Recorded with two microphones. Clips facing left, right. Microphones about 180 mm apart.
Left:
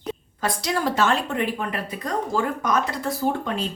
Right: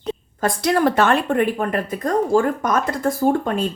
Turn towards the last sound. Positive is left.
turn(degrees=-50)  # may be behind; listen again after turning